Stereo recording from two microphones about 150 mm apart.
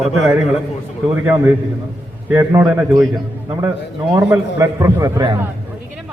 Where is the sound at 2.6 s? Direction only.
Centre (ahead or behind).